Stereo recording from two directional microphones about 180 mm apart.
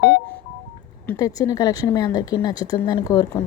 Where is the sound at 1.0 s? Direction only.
20° left (ahead or behind).